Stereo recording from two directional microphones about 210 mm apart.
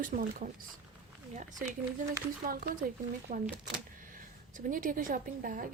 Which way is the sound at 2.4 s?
45° right (ahead or behind).